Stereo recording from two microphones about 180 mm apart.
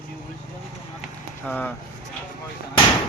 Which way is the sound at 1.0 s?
5° left (ahead or behind).